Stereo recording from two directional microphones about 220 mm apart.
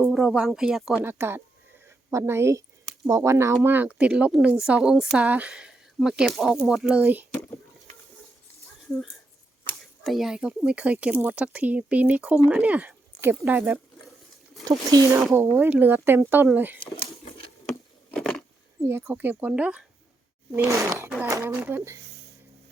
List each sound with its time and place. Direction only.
0.0 s speech: 5° right (ahead or behind)
9.6 s speech: centre (ahead or behind)
17.7 s wood: 5° left (ahead or behind)
18.9 s speech: 10° right (ahead or behind)